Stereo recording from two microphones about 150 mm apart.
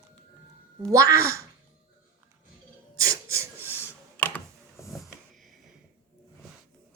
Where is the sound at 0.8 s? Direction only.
20° right (ahead or behind).